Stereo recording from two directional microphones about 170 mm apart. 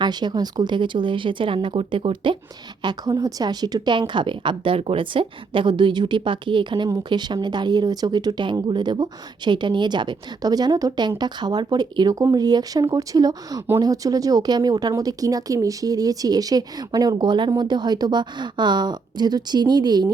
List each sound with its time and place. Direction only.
0.0 s speech: 25° right (ahead or behind)